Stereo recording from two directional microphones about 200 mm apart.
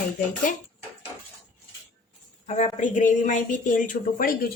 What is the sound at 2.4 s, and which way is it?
Speech, 35° left (ahead or behind).